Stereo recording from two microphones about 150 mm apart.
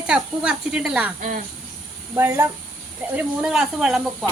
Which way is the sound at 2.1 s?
15° right (ahead or behind).